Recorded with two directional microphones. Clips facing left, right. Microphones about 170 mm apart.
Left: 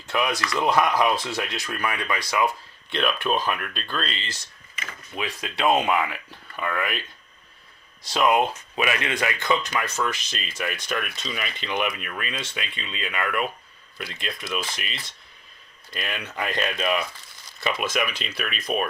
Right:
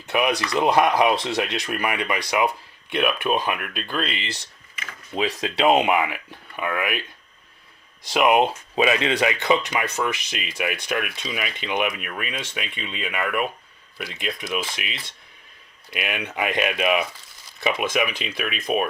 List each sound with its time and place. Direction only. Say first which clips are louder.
0.1 s speech: right 3 dB; 15° right (ahead or behind)
5.1 s speech: right 7 dB; 30° right (ahead or behind); by 7.0 s 10° right (ahead or behind)
8.0 s speech: right 3 dB; 15° right (ahead or behind)